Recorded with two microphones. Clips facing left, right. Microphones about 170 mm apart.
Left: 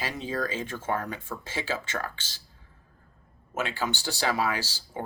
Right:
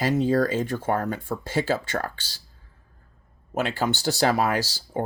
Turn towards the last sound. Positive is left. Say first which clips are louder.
# right 7 dB
turn(degrees=-45)  # may be behind; listen again after turning